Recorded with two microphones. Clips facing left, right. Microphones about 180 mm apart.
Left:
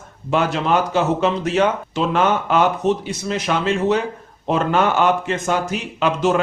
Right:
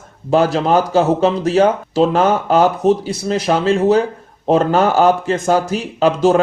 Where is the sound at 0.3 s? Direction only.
35° right (ahead or behind).